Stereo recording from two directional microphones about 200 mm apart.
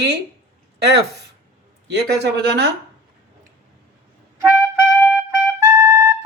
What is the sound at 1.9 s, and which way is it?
Speech, 55° right (ahead or behind).